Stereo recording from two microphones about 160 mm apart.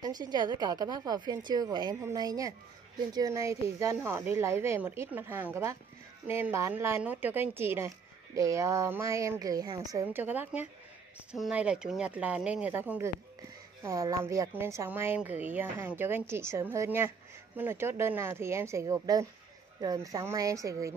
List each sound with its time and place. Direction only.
0.0 s speech: 25° right (ahead or behind)